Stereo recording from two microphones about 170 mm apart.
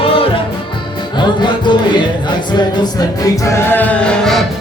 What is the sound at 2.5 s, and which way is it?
Music, 25° left (ahead or behind).